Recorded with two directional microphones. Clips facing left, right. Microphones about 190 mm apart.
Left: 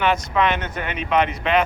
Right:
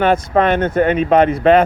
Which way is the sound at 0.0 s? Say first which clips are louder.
Right 6 dB; 50° right (ahead or behind).